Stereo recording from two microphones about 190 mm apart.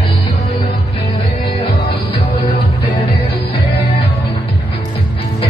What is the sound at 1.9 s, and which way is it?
Music, 25° left (ahead or behind).